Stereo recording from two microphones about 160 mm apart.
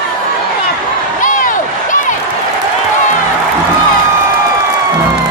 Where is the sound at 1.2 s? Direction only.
55° left (ahead or behind).